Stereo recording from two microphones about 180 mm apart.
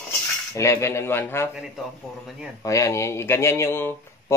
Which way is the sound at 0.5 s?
15° left (ahead or behind).